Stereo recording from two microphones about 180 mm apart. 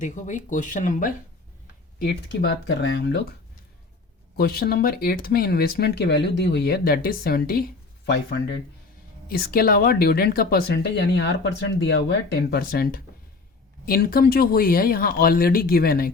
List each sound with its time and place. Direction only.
0.0 s speech: 45° left (ahead or behind)
2.0 s speech: 60° left (ahead or behind)
4.4 s speech: 60° left (ahead or behind)
8.0 s speech: 75° left (ahead or behind)
9.3 s speech: 55° left (ahead or behind)